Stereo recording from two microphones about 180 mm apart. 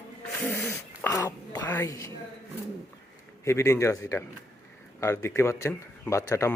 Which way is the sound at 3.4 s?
15° left (ahead or behind).